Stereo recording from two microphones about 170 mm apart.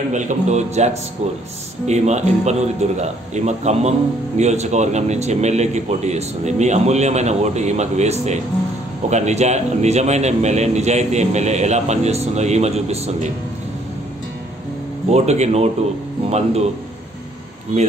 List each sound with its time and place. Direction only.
0.1 s a man's voice: 45° right (ahead or behind)
15.0 s a man's voice: 40° right (ahead or behind)